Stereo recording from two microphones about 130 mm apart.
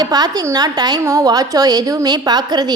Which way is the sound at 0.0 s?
30° right (ahead or behind).